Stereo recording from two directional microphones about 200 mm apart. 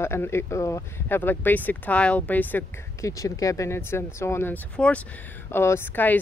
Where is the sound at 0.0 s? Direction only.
10° left (ahead or behind).